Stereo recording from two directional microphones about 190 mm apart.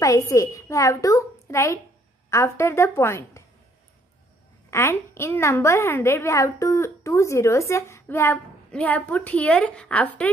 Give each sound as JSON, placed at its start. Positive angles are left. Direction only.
{"t": 0.0, "sound": "a woman's voice", "side_deg": 15}
{"t": 4.6, "sound": "a woman's voice", "side_deg": 15}